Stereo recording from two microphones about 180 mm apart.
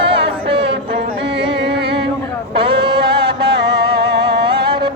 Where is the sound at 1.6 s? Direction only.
70° right (ahead or behind).